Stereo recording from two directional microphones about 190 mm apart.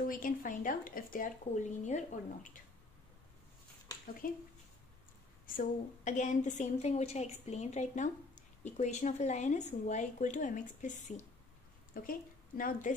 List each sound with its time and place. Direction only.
0.0 s speech: 45° left (ahead or behind)
4.2 s speech: 45° left (ahead or behind)
5.6 s a woman's voice: 40° left (ahead or behind)